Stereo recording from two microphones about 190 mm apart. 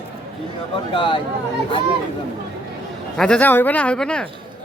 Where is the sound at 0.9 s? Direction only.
25° left (ahead or behind).